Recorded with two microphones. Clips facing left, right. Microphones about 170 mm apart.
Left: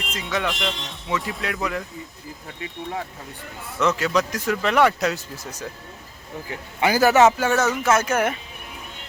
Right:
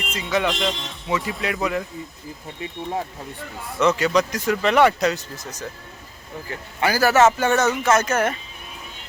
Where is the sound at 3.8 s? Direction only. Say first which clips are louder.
Right 2 dB; centre (ahead or behind); by 7.3 s 15° left (ahead or behind).